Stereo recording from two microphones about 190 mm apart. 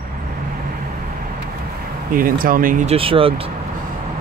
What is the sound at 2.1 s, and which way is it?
Speech, 50° right (ahead or behind).